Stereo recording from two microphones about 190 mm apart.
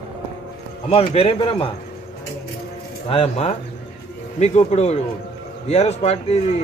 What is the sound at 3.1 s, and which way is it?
Speech, 30° left (ahead or behind).